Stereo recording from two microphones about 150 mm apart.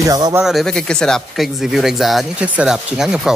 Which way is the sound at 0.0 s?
20° right (ahead or behind).